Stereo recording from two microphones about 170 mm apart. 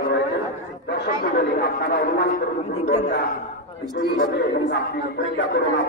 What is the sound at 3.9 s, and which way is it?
Speech, 75° left (ahead or behind).